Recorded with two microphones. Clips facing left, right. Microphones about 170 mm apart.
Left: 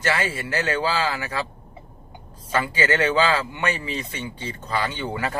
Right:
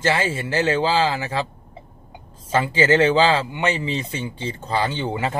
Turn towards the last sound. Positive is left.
turn(degrees=-25)  # may be behind; listen again after turning